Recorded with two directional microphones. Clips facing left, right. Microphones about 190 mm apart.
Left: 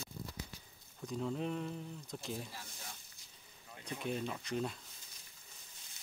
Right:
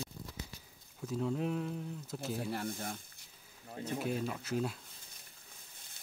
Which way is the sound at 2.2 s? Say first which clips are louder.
Right 10 dB; 60° right (ahead or behind).